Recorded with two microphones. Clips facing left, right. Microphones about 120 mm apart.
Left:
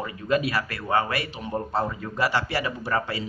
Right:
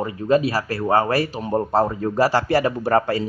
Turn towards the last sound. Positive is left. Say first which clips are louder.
# right 8 dB
turn(degrees=-45)  # may be behind; listen again after turning